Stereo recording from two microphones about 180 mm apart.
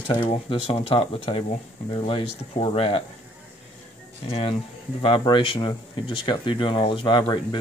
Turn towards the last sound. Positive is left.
turn(degrees=25)  # may be behind; listen again after turning